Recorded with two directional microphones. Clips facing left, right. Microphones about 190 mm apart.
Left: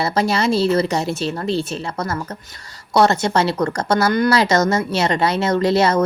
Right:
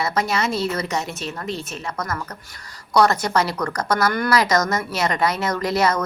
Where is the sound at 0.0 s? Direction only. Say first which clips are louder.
Left 4 dB; 30° left (ahead or behind).